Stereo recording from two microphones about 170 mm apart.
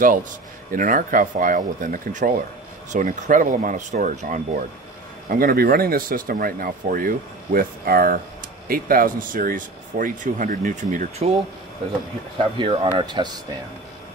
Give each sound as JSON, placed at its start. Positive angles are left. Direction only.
{"t": 0.7, "sound": "speech", "side_deg": -55}
{"t": 5.3, "sound": "speech", "side_deg": -60}
{"t": 12.5, "sound": "speech", "side_deg": -30}